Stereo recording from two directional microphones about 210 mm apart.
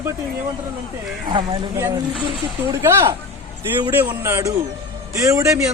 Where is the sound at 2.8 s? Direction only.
15° right (ahead or behind).